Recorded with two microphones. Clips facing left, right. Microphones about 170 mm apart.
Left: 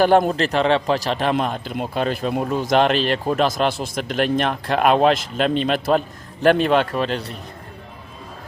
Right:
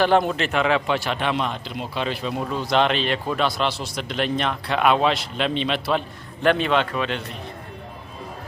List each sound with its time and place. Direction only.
0.0 s a man's voice: 45° left (ahead or behind)